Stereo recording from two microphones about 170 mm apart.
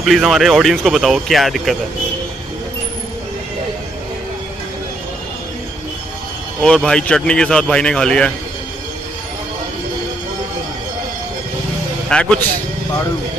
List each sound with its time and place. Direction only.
0.0 s speech: centre (ahead or behind)
6.6 s speech: 5° left (ahead or behind)
12.1 s a man's voice: 5° left (ahead or behind)